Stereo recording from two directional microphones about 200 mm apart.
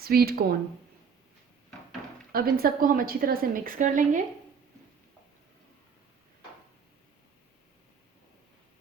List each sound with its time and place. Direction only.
0.0 s a woman's voice: 50° right (ahead or behind)
2.3 s a woman's voice: 45° right (ahead or behind)